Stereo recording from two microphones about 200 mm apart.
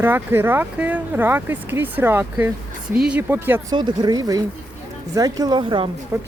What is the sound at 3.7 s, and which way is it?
A woman's voice, 20° right (ahead or behind).